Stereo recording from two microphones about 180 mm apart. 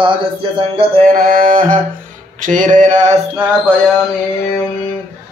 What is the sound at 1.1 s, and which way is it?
Music, 50° right (ahead or behind).